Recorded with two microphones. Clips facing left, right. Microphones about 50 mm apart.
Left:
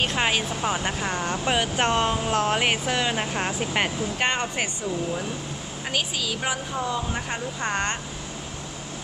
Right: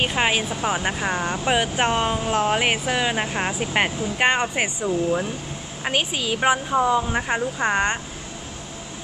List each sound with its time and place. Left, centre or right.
0.0 s speech: centre
5.9 s a woman's voice: right